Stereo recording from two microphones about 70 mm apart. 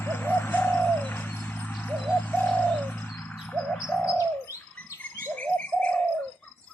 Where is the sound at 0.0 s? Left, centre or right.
Left.